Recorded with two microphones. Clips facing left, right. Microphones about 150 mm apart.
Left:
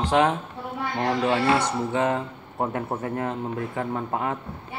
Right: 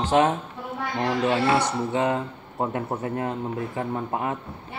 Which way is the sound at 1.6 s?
25° right (ahead or behind).